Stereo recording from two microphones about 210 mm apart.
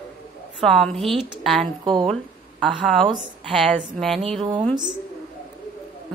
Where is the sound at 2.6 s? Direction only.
Centre (ahead or behind).